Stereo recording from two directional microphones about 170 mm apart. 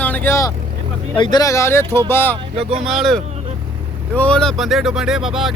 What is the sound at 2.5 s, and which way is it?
Speech, 35° right (ahead or behind).